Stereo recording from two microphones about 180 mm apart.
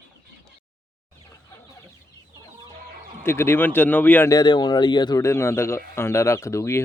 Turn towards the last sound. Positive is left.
turn(degrees=15)  # may be behind; listen again after turning